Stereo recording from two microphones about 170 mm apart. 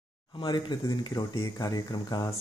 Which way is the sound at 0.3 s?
30° left (ahead or behind).